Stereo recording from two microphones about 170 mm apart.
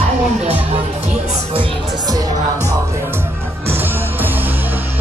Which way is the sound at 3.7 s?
10° right (ahead or behind).